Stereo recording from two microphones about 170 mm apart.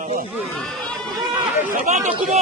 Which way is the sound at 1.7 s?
45° right (ahead or behind).